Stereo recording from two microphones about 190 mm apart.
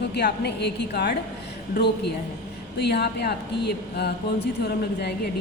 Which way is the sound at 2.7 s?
60° left (ahead or behind).